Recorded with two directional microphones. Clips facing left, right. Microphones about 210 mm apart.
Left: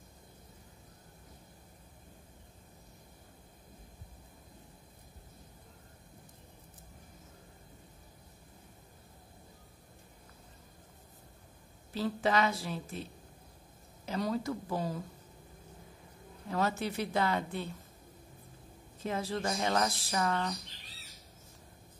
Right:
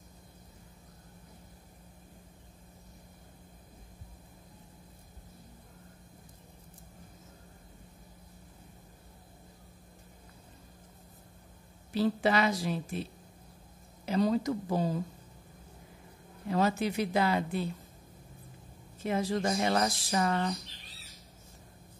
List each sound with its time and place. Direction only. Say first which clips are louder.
11.9 s speech: right 3 dB; 10° right (ahead or behind)
14.1 s speech: right 6 dB; 20° right (ahead or behind)
16.4 s speech: right 4 dB; 15° right (ahead or behind)
19.0 s speech: right 4 dB; 15° right (ahead or behind)